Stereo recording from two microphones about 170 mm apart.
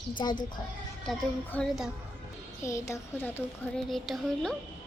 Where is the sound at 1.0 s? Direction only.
5° left (ahead or behind).